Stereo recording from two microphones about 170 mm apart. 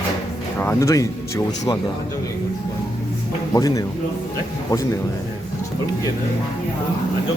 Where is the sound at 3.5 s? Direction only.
20° left (ahead or behind).